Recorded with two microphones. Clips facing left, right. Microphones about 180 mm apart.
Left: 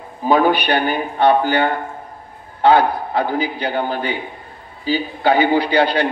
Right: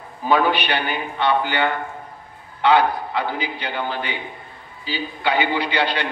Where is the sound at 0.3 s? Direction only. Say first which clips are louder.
Left 4 dB; 45° left (ahead or behind).